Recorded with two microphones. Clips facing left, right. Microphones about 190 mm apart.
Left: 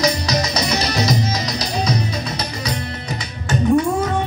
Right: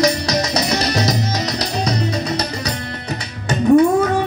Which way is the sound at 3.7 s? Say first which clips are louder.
Right 6 dB; 60° right (ahead or behind).